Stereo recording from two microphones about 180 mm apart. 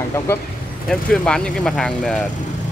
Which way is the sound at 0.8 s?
5° left (ahead or behind).